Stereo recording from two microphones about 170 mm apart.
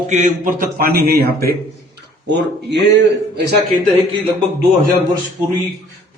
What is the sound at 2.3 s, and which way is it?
Speech, 90° right.